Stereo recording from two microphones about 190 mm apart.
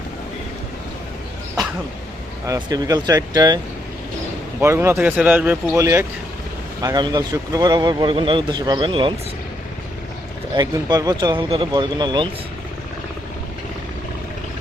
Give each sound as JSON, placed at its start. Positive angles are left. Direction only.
{"t": 2.5, "sound": "a man's voice", "side_deg": -20}
{"t": 4.6, "sound": "a man's voice", "side_deg": -15}
{"t": 10.5, "sound": "a man's voice", "side_deg": -25}